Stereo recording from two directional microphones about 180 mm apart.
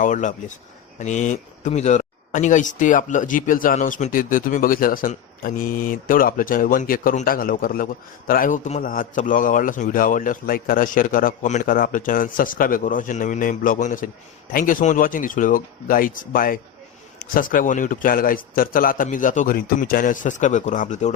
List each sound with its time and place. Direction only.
0.0 s speech: 45° left (ahead or behind)